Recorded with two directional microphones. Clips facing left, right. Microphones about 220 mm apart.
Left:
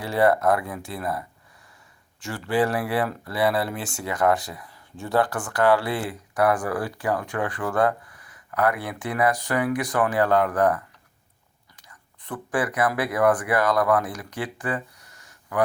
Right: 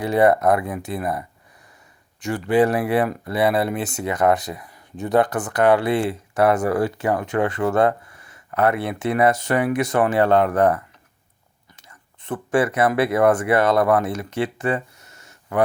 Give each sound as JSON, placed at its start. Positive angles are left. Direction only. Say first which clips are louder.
{"t": 0.0, "sound": "speech", "louder": "right 4 dB", "side_deg": -20}
{"t": 2.2, "sound": "speech", "louder": "right 6 dB", "side_deg": -20}
{"t": 11.8, "sound": "speech", "louder": "right 1 dB", "side_deg": -25}